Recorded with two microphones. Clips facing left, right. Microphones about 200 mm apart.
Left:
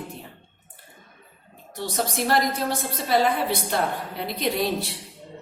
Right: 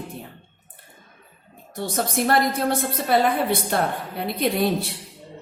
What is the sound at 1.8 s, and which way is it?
A woman's voice, 55° right (ahead or behind).